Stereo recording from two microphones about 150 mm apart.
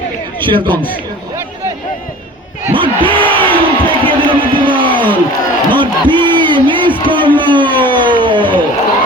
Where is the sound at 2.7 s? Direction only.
35° right (ahead or behind).